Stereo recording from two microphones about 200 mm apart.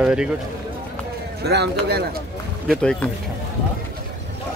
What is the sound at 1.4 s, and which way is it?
Speech, 55° right (ahead or behind).